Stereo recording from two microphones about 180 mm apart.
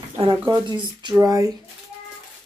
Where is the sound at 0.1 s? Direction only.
30° right (ahead or behind).